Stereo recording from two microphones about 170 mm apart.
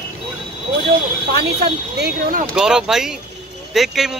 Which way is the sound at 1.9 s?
75° right (ahead or behind).